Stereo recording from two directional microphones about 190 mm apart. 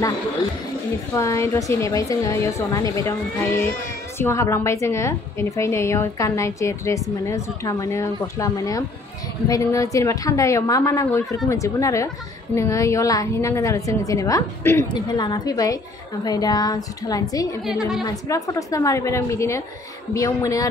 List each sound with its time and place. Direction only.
1.1 s a woman's voice: 15° left (ahead or behind)
17.6 s a woman's voice: centre (ahead or behind)
18.0 s a woman's voice: 15° left (ahead or behind)